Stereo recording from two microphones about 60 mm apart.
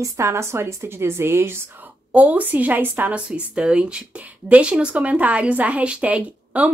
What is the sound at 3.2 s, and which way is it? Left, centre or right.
Speech, right.